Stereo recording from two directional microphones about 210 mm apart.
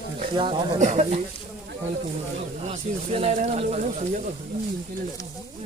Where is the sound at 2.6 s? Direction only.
30° right (ahead or behind).